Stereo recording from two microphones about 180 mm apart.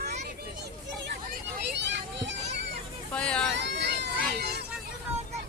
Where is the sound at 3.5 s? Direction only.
75° right (ahead or behind).